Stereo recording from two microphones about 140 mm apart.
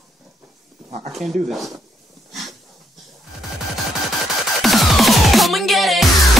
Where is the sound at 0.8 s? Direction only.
45° right (ahead or behind).